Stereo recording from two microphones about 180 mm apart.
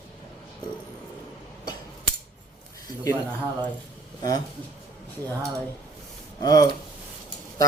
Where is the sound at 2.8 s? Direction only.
20° left (ahead or behind).